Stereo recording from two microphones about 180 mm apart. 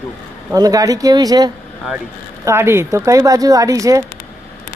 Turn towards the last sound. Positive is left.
turn(degrees=-20)  # may be behind; listen again after turning